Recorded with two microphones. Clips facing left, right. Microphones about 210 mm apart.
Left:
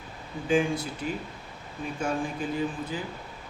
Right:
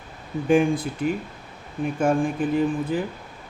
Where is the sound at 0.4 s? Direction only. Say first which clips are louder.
Right 6 dB; 55° right (ahead or behind).